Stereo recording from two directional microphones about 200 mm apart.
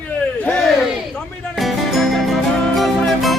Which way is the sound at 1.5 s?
Centre (ahead or behind).